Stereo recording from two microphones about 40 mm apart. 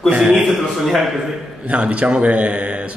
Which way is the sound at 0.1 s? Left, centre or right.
Right.